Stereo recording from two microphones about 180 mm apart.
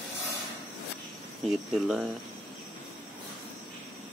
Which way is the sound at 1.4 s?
5° right (ahead or behind).